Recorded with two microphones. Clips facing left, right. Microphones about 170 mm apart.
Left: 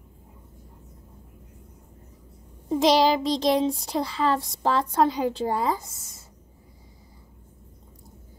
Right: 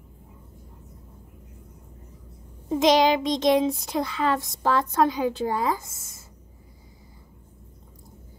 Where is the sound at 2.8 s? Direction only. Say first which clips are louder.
Right 1 dB; 30° left (ahead or behind).